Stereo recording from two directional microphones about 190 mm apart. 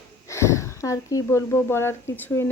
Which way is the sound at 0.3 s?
15° left (ahead or behind).